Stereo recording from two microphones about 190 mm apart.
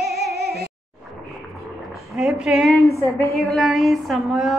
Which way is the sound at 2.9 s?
15° left (ahead or behind).